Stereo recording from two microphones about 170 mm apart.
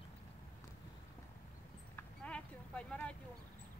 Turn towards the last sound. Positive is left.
turn(degrees=5)  # may be behind; listen again after turning